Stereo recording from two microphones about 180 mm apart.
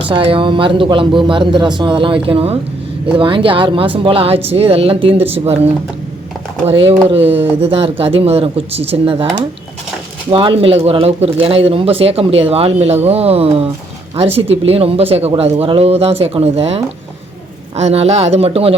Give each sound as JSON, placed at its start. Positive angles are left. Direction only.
{"t": 0.0, "sound": "speech", "side_deg": -30}
{"t": 6.7, "sound": "speech", "side_deg": -35}
{"t": 7.2, "sound": "speech", "side_deg": -10}
{"t": 7.6, "sound": "speech", "side_deg": -30}